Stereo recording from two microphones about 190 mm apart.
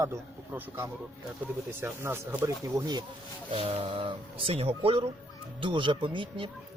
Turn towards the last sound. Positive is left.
turn(degrees=-25)  # may be behind; listen again after turning